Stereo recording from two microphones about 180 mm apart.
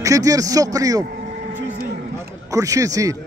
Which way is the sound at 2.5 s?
20° right (ahead or behind).